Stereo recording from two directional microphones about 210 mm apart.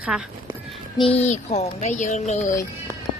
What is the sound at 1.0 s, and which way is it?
Speech, 30° left (ahead or behind).